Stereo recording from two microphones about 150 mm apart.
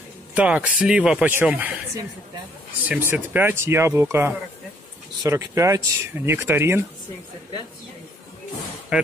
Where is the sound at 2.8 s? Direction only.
10° right (ahead or behind).